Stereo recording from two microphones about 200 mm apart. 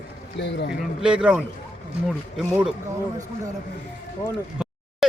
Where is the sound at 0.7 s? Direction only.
5° right (ahead or behind).